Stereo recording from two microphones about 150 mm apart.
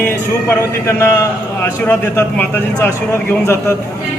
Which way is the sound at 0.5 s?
15° left (ahead or behind).